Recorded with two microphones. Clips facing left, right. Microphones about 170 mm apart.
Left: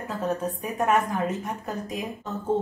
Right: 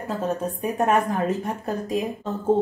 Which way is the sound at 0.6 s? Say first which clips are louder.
Right 4 dB; 35° right (ahead or behind).